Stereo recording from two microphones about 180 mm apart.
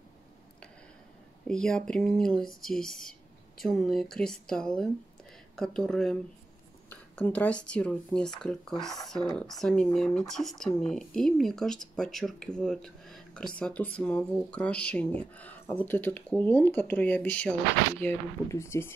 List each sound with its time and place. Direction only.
1.5 s speech: 5° left (ahead or behind)